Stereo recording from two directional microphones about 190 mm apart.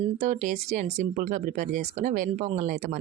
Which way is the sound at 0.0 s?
40° right (ahead or behind).